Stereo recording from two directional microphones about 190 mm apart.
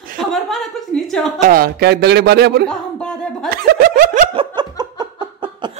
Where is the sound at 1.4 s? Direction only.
50° right (ahead or behind).